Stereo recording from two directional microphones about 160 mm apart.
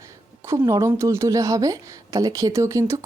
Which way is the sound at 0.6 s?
20° right (ahead or behind).